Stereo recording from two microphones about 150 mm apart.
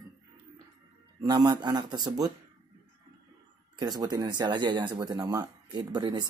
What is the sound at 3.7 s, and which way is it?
A man's voice, 30° right (ahead or behind).